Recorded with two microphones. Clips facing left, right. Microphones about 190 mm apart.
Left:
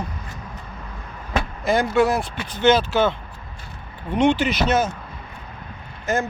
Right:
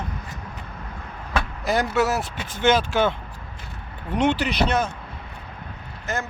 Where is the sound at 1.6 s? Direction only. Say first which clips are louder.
Left 4 dB; centre (ahead or behind).